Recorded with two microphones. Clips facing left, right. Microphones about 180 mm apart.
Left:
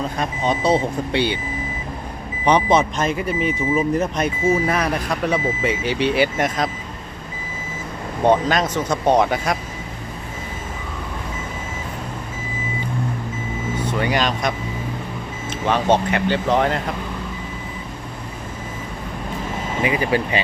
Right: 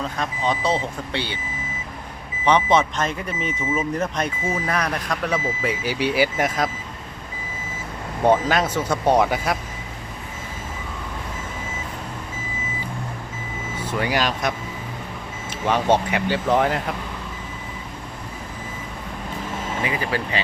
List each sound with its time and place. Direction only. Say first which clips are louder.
0.2 s speech: left 2 dB; 15° left (ahead or behind)
2.7 s speech: left 2 dB; 10° left (ahead or behind)
3.6 s speech: left 4 dB; 35° left (ahead or behind)
4.0 s speech: left 5 dB; 10° left (ahead or behind)
8.2 s speech: left 1 dB; 10° right (ahead or behind)
13.8 s speech: left 1 dB; 5° right (ahead or behind)
19.8 s speech: left 7 dB; 20° left (ahead or behind)